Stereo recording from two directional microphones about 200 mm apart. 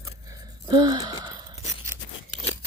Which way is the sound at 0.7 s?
20° right (ahead or behind).